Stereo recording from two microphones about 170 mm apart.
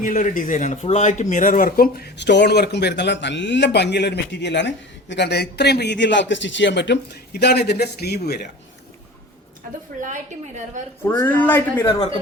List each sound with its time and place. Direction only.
0.0 s speech: 50° left (ahead or behind); by 8.4 s 70° left (ahead or behind)
10.0 s a woman's voice: 50° right (ahead or behind)
11.0 s speech: 15° left (ahead or behind)